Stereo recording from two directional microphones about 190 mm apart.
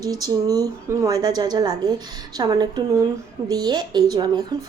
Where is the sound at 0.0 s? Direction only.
20° right (ahead or behind).